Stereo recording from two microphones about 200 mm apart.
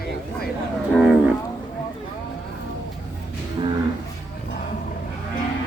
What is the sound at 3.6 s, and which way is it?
Cattle, 25° right (ahead or behind).